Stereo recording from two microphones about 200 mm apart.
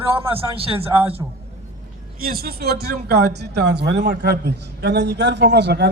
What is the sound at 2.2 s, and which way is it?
Speech, 50° right (ahead or behind).